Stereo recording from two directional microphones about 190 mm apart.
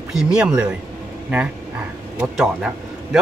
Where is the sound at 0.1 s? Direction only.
5° right (ahead or behind).